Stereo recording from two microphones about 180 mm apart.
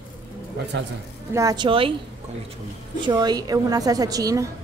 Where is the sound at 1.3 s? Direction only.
20° right (ahead or behind).